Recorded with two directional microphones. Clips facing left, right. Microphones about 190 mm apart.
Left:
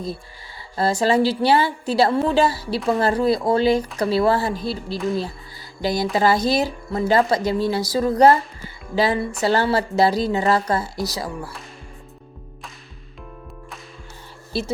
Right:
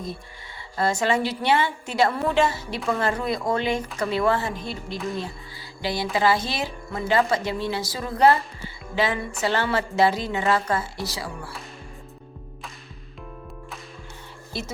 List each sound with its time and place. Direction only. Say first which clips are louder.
0.8 s speech: left 4 dB; 35° left (ahead or behind)
14.5 s speech: left 7 dB; 35° left (ahead or behind)